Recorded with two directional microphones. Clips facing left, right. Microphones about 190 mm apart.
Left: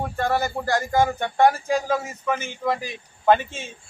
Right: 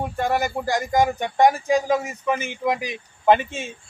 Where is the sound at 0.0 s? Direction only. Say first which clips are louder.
Right 1 dB; 15° right (ahead or behind).